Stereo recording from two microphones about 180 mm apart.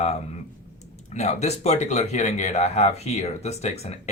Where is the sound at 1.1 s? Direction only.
35° left (ahead or behind).